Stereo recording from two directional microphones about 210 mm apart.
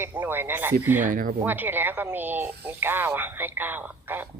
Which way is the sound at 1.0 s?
40° right (ahead or behind).